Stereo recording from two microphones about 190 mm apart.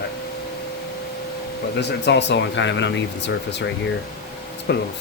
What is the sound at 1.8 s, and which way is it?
Speech, 65° left (ahead or behind).